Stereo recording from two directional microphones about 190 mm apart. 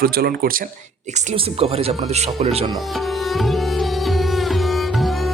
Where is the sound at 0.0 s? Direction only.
55° right (ahead or behind).